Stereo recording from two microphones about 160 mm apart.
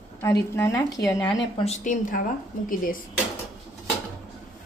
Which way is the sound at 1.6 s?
50° left (ahead or behind).